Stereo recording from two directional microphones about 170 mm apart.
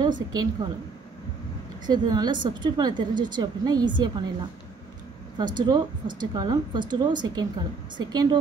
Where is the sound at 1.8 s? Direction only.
25° right (ahead or behind).